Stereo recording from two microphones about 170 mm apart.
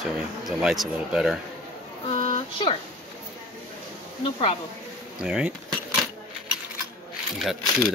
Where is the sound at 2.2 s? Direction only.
30° left (ahead or behind).